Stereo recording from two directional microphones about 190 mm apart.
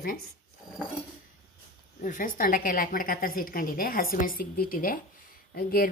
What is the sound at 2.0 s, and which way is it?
A woman's voice, 45° left (ahead or behind).